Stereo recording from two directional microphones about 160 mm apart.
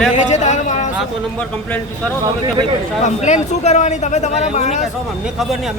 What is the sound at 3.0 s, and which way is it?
Speech, 45° left (ahead or behind).